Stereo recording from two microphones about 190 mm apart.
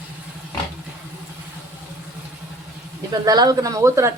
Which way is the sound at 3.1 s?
20° right (ahead or behind).